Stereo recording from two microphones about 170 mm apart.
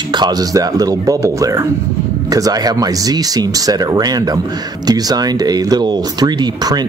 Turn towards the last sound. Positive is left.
turn(degrees=-25)  # may be behind; listen again after turning